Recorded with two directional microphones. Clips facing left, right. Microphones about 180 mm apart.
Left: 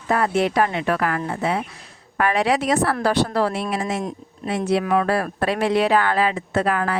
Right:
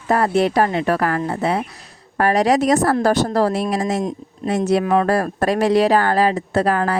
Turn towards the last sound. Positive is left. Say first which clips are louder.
# right 3 dB
turn(degrees=-35)  # may be behind; listen again after turning